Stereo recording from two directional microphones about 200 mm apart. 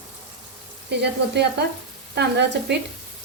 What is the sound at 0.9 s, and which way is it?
Frying, 60° right (ahead or behind).